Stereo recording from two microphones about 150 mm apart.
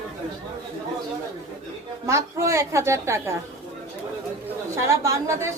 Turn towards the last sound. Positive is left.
turn(degrees=-20)  # may be behind; listen again after turning